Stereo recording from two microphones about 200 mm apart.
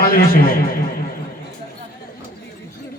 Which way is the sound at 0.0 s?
45° left (ahead or behind).